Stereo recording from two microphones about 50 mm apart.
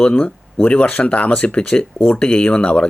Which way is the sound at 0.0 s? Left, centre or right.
Left.